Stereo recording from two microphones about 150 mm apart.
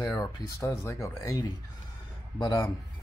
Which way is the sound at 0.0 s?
25° left (ahead or behind).